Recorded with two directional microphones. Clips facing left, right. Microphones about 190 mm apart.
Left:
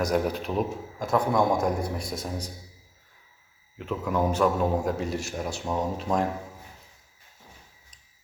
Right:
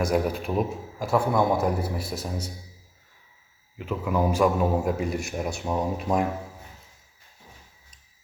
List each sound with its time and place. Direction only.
0.0 s a man's voice: 5° right (ahead or behind)
3.8 s a man's voice: 5° right (ahead or behind)